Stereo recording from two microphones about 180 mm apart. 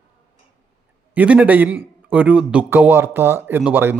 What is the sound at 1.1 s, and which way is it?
A man's voice, 10° right (ahead or behind).